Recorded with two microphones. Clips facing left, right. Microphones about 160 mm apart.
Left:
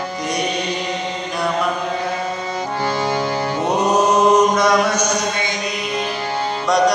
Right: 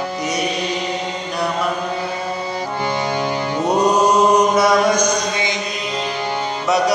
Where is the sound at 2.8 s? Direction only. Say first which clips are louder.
Left 1 dB; 15° right (ahead or behind).